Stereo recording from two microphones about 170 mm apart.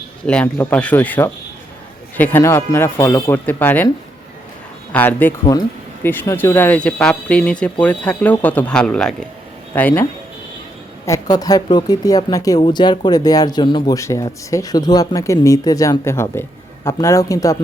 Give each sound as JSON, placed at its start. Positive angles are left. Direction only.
{"t": 0.3, "sound": "speech", "side_deg": 10}
{"t": 4.9, "sound": "speech", "side_deg": 10}